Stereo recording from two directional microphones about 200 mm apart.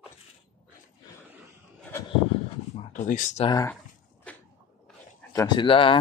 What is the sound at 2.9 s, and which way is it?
Speech, 40° left (ahead or behind).